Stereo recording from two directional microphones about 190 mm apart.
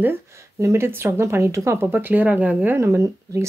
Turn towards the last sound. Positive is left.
turn(degrees=-15)  # may be behind; listen again after turning